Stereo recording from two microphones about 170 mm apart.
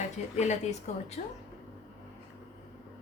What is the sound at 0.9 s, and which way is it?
Speech, 40° left (ahead or behind).